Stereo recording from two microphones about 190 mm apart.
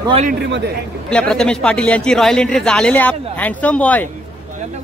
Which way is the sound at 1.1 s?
5° left (ahead or behind).